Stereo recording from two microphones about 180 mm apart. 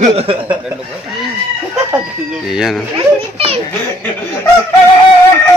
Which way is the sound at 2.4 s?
Centre (ahead or behind).